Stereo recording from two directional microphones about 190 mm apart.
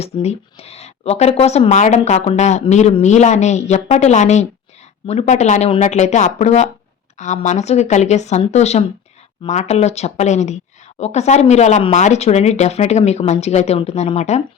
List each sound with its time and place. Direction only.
0.0 s speech: 35° left (ahead or behind)